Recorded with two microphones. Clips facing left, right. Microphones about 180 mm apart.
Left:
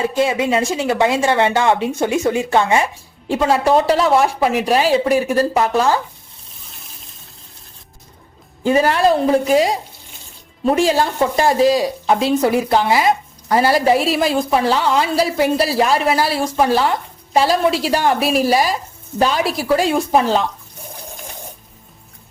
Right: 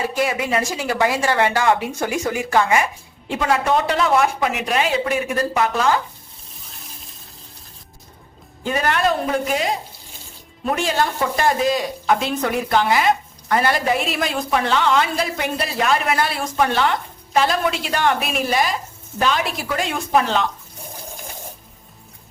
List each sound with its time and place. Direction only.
0.1 s a woman's voice: 25° left (ahead or behind)
8.6 s a woman's voice: 30° left (ahead or behind)